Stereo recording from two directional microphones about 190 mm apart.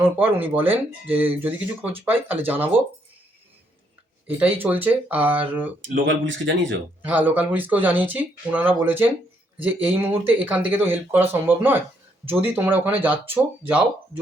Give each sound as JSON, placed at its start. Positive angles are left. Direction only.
{"t": 0.0, "sound": "speech", "side_deg": -10}
{"t": 4.5, "sound": "speech", "side_deg": -10}
{"t": 5.9, "sound": "speech", "side_deg": -70}
{"t": 7.0, "sound": "speech", "side_deg": -10}